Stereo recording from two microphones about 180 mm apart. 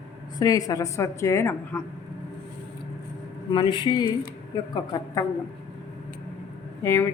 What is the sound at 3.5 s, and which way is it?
Speech, 25° left (ahead or behind).